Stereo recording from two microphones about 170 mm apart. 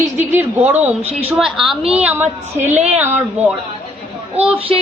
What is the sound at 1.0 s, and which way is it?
Speech, 35° right (ahead or behind).